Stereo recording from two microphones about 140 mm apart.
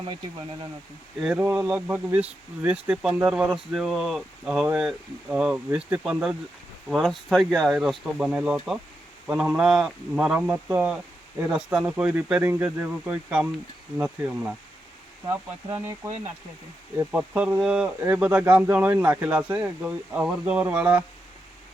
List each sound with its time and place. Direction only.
1.2 s speech: 10° right (ahead or behind)
16.0 s speech: 25° right (ahead or behind)
17.1 s speech: 10° right (ahead or behind)